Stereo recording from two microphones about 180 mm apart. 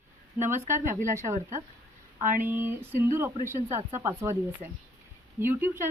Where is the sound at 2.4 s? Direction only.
10° right (ahead or behind).